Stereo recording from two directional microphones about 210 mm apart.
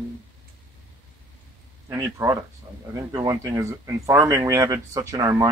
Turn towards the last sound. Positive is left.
turn(degrees=-15)  # may be behind; listen again after turning